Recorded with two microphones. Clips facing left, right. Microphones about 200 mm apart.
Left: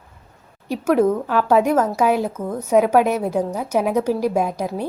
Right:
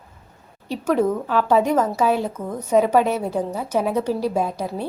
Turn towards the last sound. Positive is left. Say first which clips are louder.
# left 2 dB
turn(degrees=15)  # may be behind; listen again after turning